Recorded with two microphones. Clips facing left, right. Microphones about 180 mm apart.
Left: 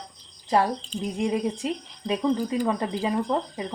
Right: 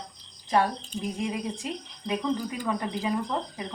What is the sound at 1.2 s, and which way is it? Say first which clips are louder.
Speech: left 9 dB; 25° left (ahead or behind).